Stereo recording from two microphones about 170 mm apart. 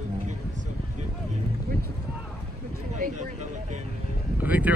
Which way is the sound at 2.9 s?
45° right (ahead or behind).